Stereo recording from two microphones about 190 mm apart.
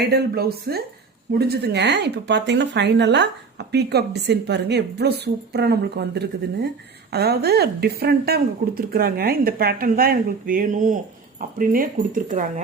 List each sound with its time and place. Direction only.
0.0 s a woman's voice: 60° right (ahead or behind)